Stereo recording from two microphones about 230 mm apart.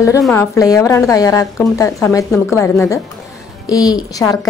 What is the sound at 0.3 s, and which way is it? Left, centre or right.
A woman's voice, centre.